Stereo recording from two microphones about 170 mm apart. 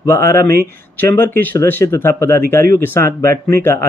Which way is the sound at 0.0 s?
15° left (ahead or behind).